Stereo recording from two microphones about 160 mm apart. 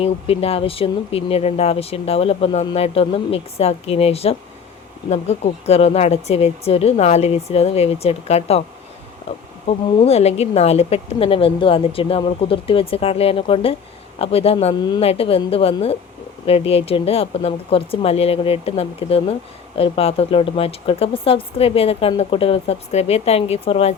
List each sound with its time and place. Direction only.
0.0 s speech: 40° left (ahead or behind)
9.6 s speech: 40° left (ahead or behind)
14.8 s a woman's voice: 25° left (ahead or behind)
15.0 s speech: 35° left (ahead or behind)